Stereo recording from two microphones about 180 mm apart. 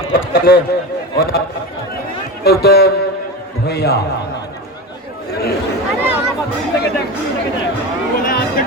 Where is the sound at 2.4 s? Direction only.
60° left (ahead or behind).